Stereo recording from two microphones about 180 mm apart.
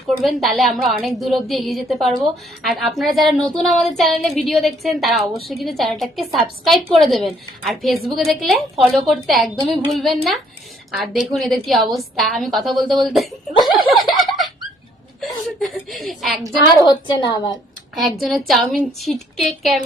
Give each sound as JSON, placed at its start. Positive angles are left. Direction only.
{"t": 0.2, "sound": "a woman's voice", "side_deg": 0}
{"t": 15.2, "sound": "a woman's voice", "side_deg": 0}
{"t": 16.8, "sound": "a woman's voice", "side_deg": 25}
{"t": 17.9, "sound": "a woman's voice", "side_deg": 0}